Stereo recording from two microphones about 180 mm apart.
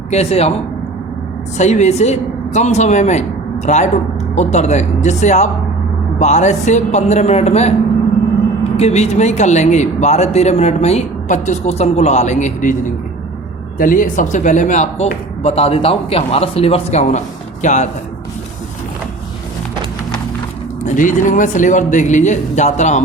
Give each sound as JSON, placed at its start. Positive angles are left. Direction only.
{"t": 0.1, "sound": "speech", "side_deg": 35}
{"t": 1.5, "sound": "speech", "side_deg": 40}
{"t": 8.7, "sound": "speech", "side_deg": 35}
{"t": 13.7, "sound": "speech", "side_deg": 50}
{"t": 20.8, "sound": "speech", "side_deg": 45}